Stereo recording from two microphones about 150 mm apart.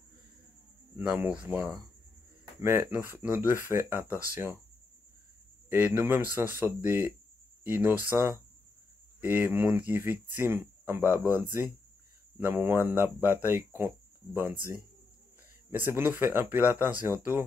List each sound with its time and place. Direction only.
0.9 s speech: 10° right (ahead or behind)
5.7 s speech: 15° right (ahead or behind)
9.2 s speech: 15° right (ahead or behind)